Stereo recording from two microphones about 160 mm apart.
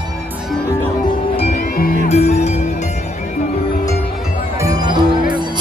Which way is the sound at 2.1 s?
45° left (ahead or behind).